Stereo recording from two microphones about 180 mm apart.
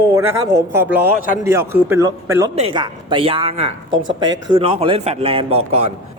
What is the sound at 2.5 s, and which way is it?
A man's voice, 30° right (ahead or behind).